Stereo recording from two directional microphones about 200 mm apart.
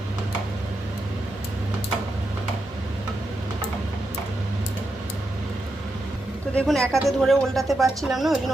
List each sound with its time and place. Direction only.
6.6 s speech: 5° left (ahead or behind)